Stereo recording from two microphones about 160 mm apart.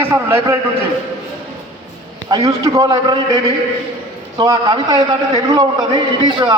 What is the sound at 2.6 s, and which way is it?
Speech, 25° right (ahead or behind).